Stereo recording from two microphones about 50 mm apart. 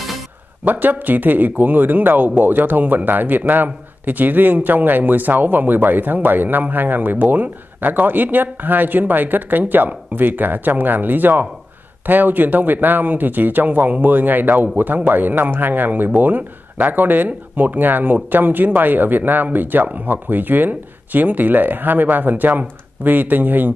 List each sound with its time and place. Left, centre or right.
0.7 s a man's voice: right